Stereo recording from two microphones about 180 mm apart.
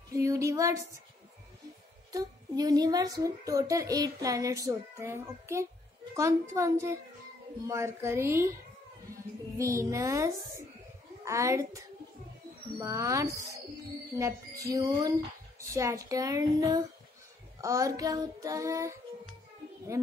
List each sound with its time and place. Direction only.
0.1 s a sound: 15° right (ahead or behind)
2.1 s a child's voice: 20° right (ahead or behind)
6.1 s child singing: 15° right (ahead or behind)
9.1 s a child's voice: 15° right (ahead or behind)
12.7 s child singing: 15° right (ahead or behind)
14.1 s music: 15° right (ahead or behind)
14.7 s a child's voice: 20° right (ahead or behind)
17.6 s child singing: 20° right (ahead or behind)